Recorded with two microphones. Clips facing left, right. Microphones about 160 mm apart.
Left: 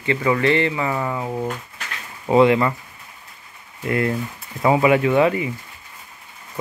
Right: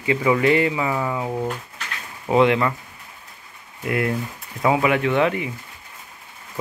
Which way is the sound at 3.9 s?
5° right (ahead or behind).